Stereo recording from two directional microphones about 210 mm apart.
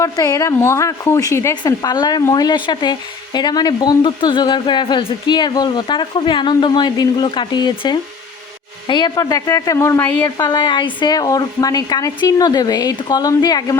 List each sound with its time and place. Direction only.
0.0 s a woman's voice: 15° left (ahead or behind)